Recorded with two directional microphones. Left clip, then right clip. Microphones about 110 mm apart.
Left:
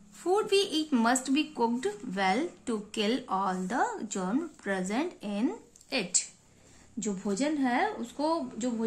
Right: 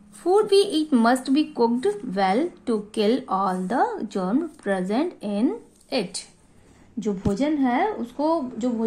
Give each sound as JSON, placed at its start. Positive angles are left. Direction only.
{"t": 0.2, "sound": "a woman's voice", "side_deg": -20}
{"t": 7.0, "sound": "speech", "side_deg": 0}